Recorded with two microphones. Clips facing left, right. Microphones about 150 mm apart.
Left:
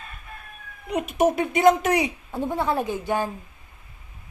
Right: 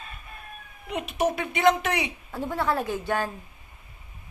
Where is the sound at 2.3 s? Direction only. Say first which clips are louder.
Left 1 dB; 15° left (ahead or behind).